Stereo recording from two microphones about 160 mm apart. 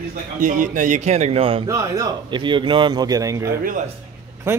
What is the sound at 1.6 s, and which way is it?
Speech, 20° right (ahead or behind).